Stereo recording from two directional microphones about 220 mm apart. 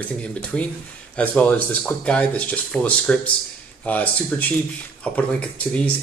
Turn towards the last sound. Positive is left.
turn(degrees=5)  # may be behind; listen again after turning